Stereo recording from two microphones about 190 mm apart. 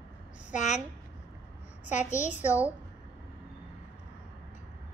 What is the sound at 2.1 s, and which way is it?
Speech, 40° left (ahead or behind).